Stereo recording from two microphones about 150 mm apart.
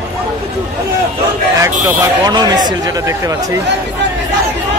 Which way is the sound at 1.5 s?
20° right (ahead or behind).